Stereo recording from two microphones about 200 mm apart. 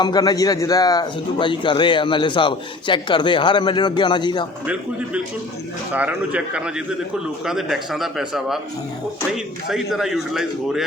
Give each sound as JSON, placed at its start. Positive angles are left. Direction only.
{"t": 0.0, "sound": "a man's voice", "side_deg": 20}
{"t": 4.6, "sound": "a man's voice", "side_deg": -5}